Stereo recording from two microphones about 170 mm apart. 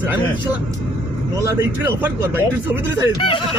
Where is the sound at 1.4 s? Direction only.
15° right (ahead or behind).